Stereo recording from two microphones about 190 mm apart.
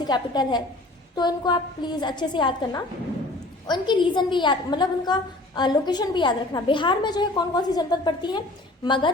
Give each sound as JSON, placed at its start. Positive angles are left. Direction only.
{"t": 0.0, "sound": "a woman's voice", "side_deg": 20}